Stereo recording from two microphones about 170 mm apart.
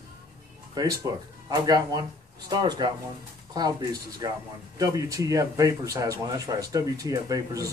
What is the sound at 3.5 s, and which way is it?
Speech, 25° right (ahead or behind).